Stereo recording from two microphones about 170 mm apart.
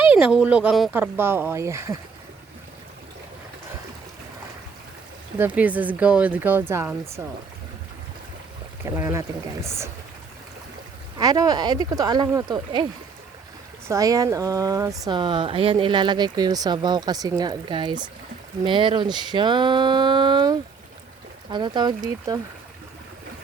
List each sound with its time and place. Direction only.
0.0 s speech: 10° right (ahead or behind)
5.4 s speech: 10° right (ahead or behind)
8.8 s speech: 15° right (ahead or behind)
11.2 s speech: 20° right (ahead or behind)